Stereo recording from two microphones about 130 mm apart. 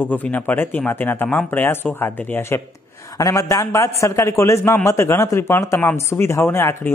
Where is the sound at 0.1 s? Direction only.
15° left (ahead or behind).